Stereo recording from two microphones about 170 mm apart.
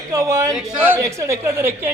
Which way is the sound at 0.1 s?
15° right (ahead or behind).